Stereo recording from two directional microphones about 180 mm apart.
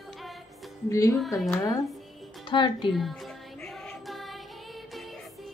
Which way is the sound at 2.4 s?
25° left (ahead or behind).